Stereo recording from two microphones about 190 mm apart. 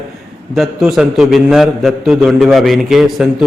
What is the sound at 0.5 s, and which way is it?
A man's voice, centre (ahead or behind).